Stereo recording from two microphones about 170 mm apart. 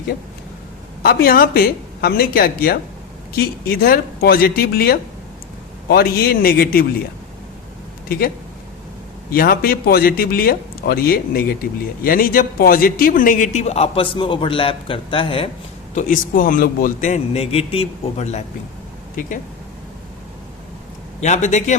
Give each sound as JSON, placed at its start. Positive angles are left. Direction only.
{"t": 1.0, "sound": "speech", "side_deg": 60}
{"t": 8.0, "sound": "speech", "side_deg": 60}
{"t": 9.3, "sound": "speech", "side_deg": 60}
{"t": 16.0, "sound": "a man's voice", "side_deg": 50}
{"t": 21.2, "sound": "a man's voice", "side_deg": 45}